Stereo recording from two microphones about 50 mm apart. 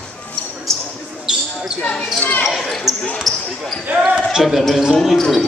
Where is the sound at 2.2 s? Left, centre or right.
Left.